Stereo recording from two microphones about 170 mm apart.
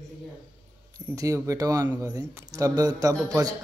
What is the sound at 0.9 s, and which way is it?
Speech, 20° right (ahead or behind).